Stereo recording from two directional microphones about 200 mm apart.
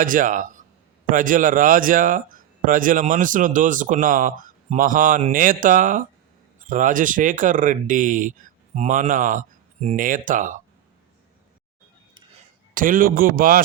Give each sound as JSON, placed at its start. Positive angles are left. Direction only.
{"t": 0.0, "sound": "a man's voice", "side_deg": -40}
{"t": 12.7, "sound": "a man's voice", "side_deg": -45}